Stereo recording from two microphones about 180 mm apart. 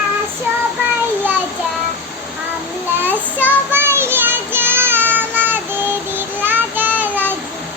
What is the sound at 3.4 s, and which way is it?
Child singing, 10° right (ahead or behind).